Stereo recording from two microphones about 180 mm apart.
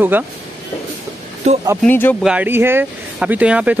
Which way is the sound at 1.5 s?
40° right (ahead or behind).